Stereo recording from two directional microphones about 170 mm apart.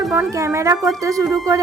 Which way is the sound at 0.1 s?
15° right (ahead or behind).